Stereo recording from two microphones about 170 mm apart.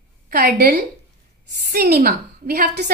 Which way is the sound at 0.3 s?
65° right (ahead or behind).